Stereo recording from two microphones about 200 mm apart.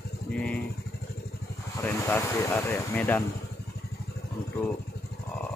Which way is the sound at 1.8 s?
10° left (ahead or behind).